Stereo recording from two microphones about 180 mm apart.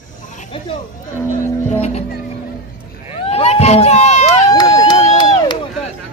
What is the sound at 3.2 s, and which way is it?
Run, 35° left (ahead or behind).